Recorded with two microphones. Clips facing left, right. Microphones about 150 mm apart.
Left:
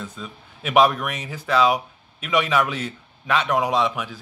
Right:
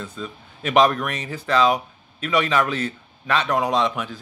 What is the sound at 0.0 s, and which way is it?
Speech, 10° left (ahead or behind).